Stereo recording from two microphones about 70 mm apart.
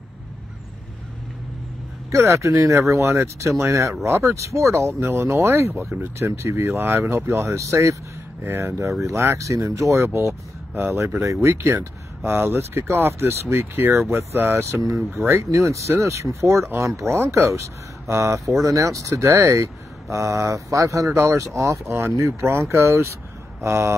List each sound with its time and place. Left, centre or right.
2.0 s speech: right
10.7 s speech: right